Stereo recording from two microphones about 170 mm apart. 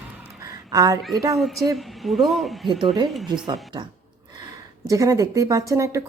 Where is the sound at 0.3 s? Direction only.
20° right (ahead or behind).